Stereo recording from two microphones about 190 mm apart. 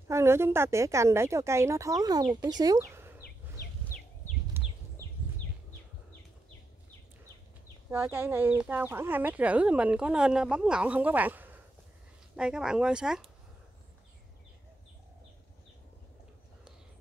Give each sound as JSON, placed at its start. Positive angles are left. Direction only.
{"t": 0.1, "sound": "speech", "side_deg": -15}
{"t": 4.6, "sound": "a sound", "side_deg": -10}
{"t": 7.9, "sound": "speech", "side_deg": -10}